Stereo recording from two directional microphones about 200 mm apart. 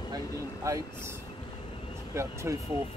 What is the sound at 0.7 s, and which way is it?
Speech, 15° right (ahead or behind).